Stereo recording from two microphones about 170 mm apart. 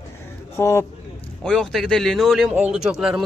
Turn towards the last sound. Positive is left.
turn(degrees=-5)  # may be behind; listen again after turning